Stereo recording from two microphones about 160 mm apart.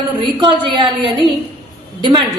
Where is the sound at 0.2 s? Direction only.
30° right (ahead or behind).